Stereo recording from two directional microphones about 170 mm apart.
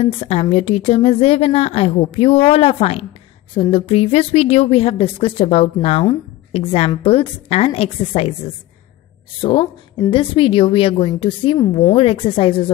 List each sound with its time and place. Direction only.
0.0 s a woman's voice: 35° left (ahead or behind)
9.4 s a woman's voice: 30° left (ahead or behind)